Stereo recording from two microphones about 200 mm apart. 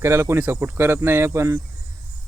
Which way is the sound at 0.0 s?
15° right (ahead or behind).